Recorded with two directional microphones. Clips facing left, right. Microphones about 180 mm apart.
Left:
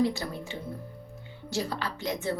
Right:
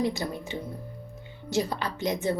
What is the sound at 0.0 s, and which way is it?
A woman's voice, 20° right (ahead or behind).